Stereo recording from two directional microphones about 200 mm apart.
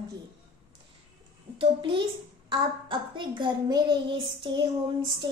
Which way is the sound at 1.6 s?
25° right (ahead or behind).